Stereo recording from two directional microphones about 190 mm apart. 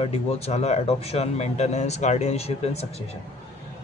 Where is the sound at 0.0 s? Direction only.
35° left (ahead or behind).